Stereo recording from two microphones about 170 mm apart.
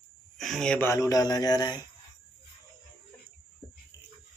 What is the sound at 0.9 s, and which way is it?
Speech, 20° left (ahead or behind).